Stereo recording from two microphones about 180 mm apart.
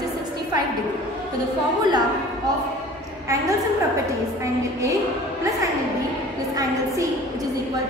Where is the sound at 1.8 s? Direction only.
25° right (ahead or behind).